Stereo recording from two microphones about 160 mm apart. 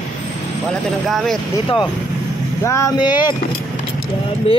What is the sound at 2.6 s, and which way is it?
Vehicle, 20° left (ahead or behind).